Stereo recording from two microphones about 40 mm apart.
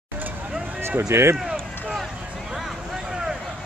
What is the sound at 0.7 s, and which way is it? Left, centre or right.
Speech, right.